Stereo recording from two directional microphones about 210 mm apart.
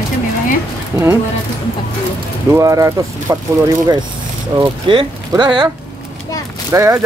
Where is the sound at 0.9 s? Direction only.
10° right (ahead or behind).